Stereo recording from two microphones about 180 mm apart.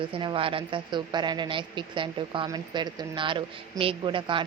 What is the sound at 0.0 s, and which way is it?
Speech, 25° right (ahead or behind).